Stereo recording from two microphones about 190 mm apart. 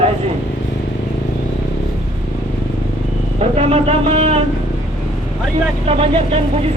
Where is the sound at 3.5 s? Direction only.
35° right (ahead or behind).